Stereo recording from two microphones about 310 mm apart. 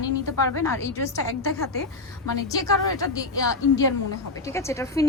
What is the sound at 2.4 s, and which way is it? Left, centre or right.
Speech, centre.